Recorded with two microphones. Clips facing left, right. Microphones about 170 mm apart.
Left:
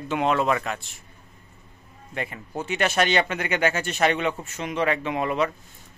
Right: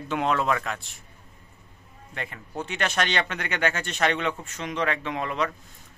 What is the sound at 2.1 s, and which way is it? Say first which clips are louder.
Speech: left 4 dB; 10° left (ahead or behind).